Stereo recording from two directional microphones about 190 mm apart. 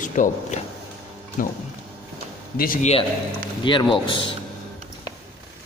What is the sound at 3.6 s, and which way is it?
Speech, 25° left (ahead or behind).